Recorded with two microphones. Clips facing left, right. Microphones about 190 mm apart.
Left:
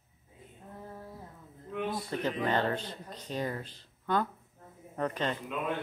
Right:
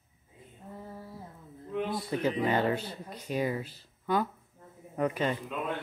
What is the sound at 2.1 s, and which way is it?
Speech, 10° right (ahead or behind).